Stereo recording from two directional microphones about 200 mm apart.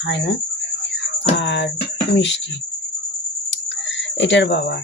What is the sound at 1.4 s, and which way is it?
Speech, 65° left (ahead or behind).